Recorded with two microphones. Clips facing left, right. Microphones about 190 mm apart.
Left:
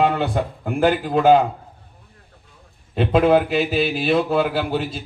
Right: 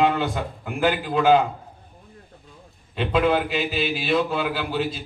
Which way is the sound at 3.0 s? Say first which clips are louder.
Left 5 dB; 45° left (ahead or behind).